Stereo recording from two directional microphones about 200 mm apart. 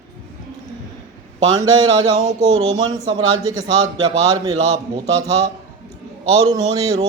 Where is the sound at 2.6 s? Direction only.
90° right.